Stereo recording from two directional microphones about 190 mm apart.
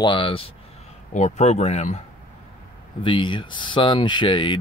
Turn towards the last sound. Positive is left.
turn(degrees=25)  # may be behind; listen again after turning